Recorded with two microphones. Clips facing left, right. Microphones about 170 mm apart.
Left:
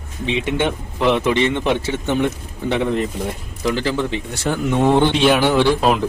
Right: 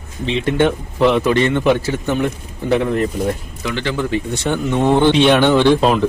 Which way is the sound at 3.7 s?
35° left (ahead or behind).